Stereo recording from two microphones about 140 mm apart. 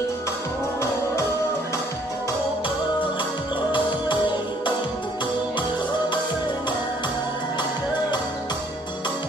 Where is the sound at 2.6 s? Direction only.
35° left (ahead or behind).